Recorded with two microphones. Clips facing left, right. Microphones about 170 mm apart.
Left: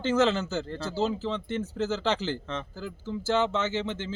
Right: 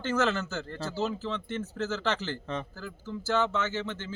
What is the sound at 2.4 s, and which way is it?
Speech, 15° right (ahead or behind).